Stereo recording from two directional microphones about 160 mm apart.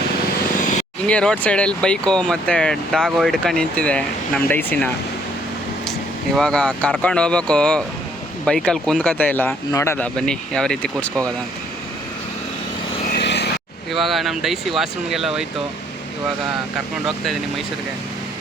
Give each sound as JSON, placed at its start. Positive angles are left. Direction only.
{"t": 1.0, "sound": "speech", "side_deg": 5}
{"t": 6.3, "sound": "speech", "side_deg": 5}
{"t": 13.1, "sound": "vehicle", "side_deg": 90}
{"t": 13.9, "sound": "speech", "side_deg": 0}